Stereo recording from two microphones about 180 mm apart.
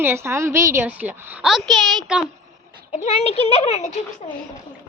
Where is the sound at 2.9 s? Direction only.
35° left (ahead or behind).